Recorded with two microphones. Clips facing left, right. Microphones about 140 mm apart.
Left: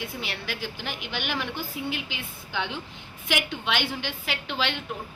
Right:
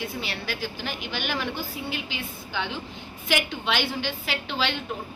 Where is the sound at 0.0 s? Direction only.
15° left (ahead or behind).